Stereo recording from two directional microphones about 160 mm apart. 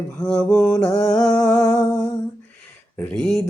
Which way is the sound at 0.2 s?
10° left (ahead or behind).